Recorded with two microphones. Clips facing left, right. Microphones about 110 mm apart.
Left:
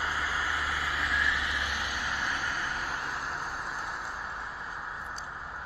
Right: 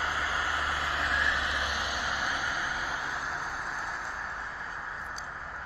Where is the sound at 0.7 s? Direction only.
25° right (ahead or behind).